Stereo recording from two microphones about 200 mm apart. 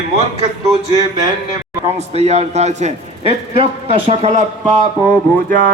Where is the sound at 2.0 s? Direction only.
35° right (ahead or behind).